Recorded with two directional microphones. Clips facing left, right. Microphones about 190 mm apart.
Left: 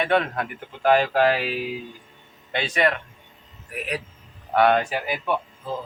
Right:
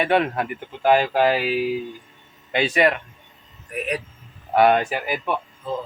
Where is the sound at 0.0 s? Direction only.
5° right (ahead or behind).